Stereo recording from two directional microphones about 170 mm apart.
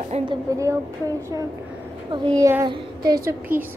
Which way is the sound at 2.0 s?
25° right (ahead or behind).